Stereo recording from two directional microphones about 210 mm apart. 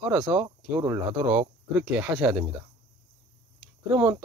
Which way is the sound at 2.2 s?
15° right (ahead or behind).